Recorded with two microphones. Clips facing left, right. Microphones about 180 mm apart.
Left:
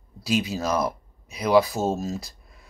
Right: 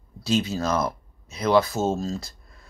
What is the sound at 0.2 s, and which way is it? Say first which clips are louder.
Speech: right 1 dB; 15° left (ahead or behind).